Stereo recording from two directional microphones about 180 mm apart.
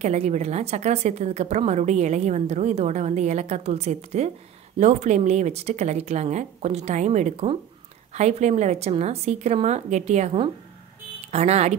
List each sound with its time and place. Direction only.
0.0 s a woman's voice: 40° right (ahead or behind)